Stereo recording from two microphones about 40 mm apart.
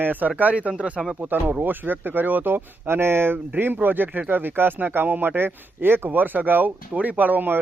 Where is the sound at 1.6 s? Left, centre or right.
Right.